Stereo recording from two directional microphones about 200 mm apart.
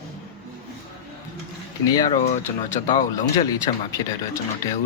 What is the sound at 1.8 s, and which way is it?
Speech, 20° left (ahead or behind).